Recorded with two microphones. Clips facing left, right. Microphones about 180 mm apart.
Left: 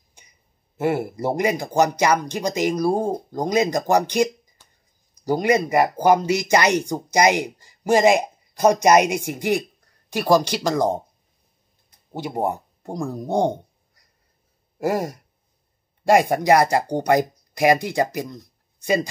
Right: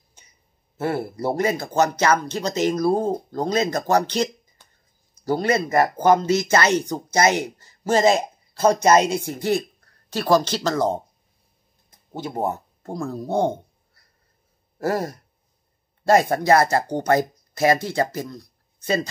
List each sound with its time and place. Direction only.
0.2 s a sound: 15° left (ahead or behind)
0.7 s speech: 15° left (ahead or behind)
12.1 s speech: 15° left (ahead or behind)